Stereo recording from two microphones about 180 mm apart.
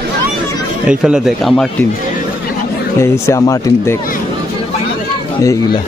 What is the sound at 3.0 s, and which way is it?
Speech, 15° left (ahead or behind).